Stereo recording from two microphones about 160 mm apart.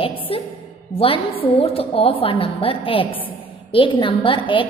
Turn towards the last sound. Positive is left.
turn(degrees=30)  # may be behind; listen again after turning